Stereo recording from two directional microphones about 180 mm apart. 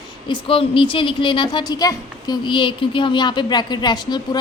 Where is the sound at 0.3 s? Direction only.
30° left (ahead or behind).